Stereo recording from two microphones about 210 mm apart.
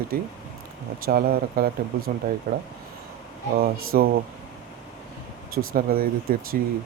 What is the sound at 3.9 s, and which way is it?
Speech, 45° right (ahead or behind).